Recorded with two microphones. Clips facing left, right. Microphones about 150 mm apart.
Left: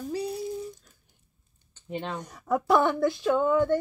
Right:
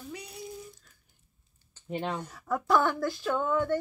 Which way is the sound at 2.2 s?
15° left (ahead or behind).